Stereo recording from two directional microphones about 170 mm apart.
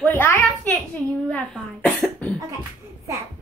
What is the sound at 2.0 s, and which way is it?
Cough, 5° left (ahead or behind).